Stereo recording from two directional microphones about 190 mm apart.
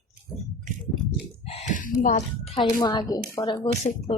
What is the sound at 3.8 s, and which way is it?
Speech, 35° left (ahead or behind).